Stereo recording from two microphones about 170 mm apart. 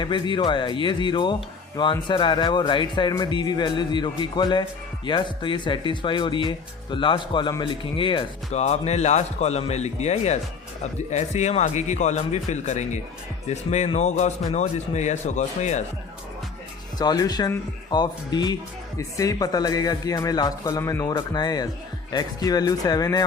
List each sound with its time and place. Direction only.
0.0 s a man's voice: 25° left (ahead or behind); by 15.8 s 45° left (ahead or behind)
17.0 s speech: 25° left (ahead or behind)